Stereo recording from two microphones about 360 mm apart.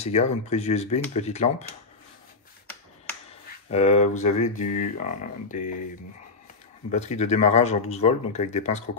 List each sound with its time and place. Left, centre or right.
0.0 s speech: centre
3.7 s speech: centre
6.9 s speech: centre